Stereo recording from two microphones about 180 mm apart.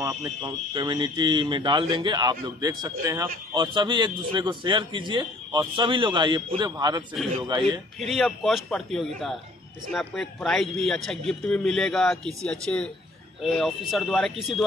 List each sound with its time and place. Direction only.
0.0 s a man's voice: 20° right (ahead or behind)
8.0 s a man's voice: centre (ahead or behind)